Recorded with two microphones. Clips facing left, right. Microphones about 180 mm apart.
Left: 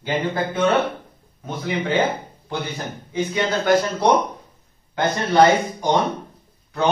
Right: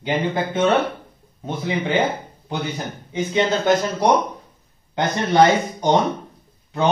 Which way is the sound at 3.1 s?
25° right (ahead or behind).